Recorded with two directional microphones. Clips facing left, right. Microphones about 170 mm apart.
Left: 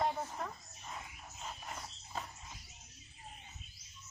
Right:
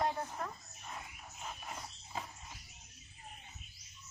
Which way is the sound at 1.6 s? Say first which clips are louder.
Even; 5° right (ahead or behind).